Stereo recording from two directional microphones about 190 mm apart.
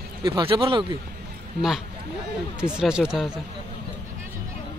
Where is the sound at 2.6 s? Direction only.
5° right (ahead or behind).